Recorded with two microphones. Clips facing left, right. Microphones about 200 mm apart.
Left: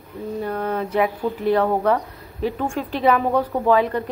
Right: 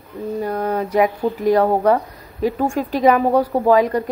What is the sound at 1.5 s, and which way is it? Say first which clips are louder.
Speech: right 4 dB; 40° right (ahead or behind).